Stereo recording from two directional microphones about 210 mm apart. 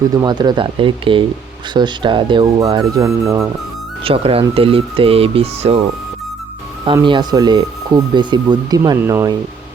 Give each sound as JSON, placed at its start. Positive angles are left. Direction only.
{"t": 0.1, "sound": "speech", "side_deg": -20}
{"t": 4.0, "sound": "speech", "side_deg": -25}
{"t": 6.8, "sound": "speech", "side_deg": -20}